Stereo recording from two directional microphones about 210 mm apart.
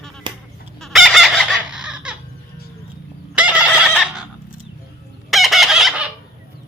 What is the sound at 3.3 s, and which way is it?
Chicken, 5° right (ahead or behind).